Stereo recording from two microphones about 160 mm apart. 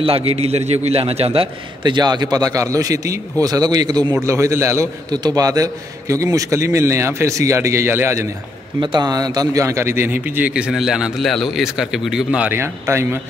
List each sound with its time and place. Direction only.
0.0 s a man's voice: 35° right (ahead or behind); by 8.3 s 15° right (ahead or behind)
8.8 s a man's voice: 25° right (ahead or behind)